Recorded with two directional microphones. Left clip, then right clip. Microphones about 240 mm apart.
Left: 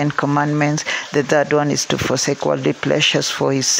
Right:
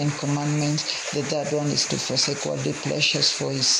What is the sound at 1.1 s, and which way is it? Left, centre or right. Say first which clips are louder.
Speech: left 11 dB; left.